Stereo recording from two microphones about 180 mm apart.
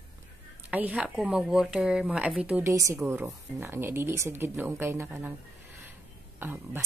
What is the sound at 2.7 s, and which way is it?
A woman's voice, 15° right (ahead or behind).